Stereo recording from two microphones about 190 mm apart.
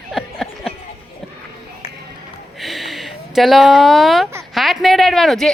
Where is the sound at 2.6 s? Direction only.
Centre (ahead or behind).